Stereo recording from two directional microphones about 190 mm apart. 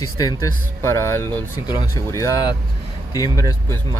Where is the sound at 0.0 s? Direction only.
20° left (ahead or behind).